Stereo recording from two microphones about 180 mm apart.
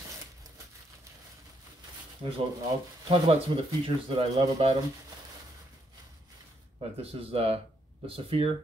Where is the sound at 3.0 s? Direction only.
30° right (ahead or behind).